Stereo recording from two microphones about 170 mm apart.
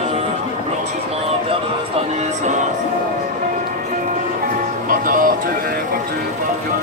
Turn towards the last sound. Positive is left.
turn(degrees=-55)  # may be behind; listen again after turning